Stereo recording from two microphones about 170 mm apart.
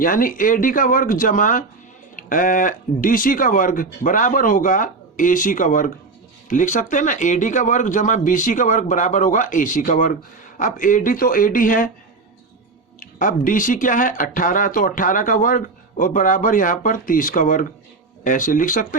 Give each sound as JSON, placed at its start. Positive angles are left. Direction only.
{"t": 0.0, "sound": "speech", "side_deg": 55}
{"t": 13.0, "sound": "speech", "side_deg": 55}